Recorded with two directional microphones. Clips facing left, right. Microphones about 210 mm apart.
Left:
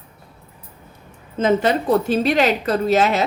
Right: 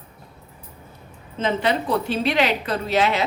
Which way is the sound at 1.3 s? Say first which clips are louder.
Left 5 dB; 45° left (ahead or behind).